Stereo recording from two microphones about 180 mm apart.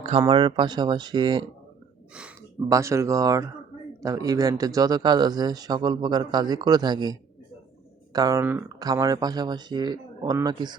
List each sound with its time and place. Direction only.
0.2 s speech: 25° right (ahead or behind)
2.6 s speech: 15° right (ahead or behind)